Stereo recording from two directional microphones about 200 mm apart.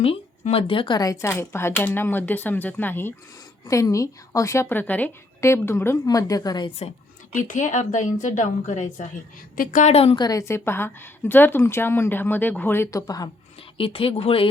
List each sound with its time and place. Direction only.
0.0 s a woman's voice: 30° left (ahead or behind)
7.3 s a woman's voice: 40° left (ahead or behind)
10.2 s a woman's voice: 15° left (ahead or behind)